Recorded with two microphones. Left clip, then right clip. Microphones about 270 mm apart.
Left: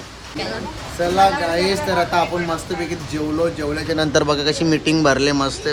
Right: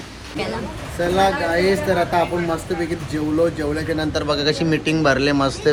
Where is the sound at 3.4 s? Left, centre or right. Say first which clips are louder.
Right 1 dB; centre.